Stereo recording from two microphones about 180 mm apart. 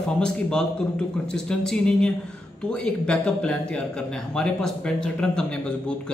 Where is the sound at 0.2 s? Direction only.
5° left (ahead or behind).